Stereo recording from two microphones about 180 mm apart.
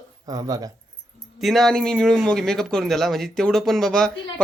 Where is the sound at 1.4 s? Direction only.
Centre (ahead or behind).